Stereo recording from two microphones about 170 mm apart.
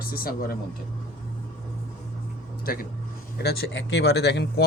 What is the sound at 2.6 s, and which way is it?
Speech, 60° left (ahead or behind).